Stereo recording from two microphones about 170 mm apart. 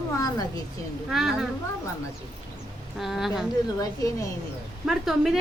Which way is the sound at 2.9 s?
Centre (ahead or behind).